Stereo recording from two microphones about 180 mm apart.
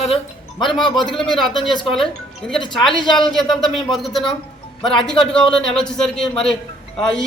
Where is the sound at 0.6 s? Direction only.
Centre (ahead or behind).